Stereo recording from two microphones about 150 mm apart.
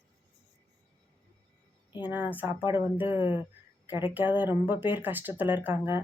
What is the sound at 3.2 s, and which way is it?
Speech, 30° left (ahead or behind).